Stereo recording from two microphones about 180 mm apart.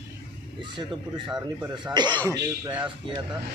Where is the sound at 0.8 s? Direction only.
25° right (ahead or behind).